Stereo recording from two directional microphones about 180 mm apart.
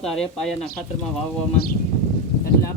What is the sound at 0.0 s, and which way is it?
Speech, 5° left (ahead or behind).